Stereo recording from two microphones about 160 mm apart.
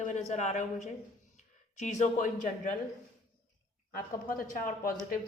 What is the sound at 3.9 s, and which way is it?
Speech, 60° left (ahead or behind).